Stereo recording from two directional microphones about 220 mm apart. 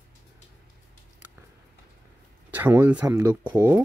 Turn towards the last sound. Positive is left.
turn(degrees=-10)  # may be behind; listen again after turning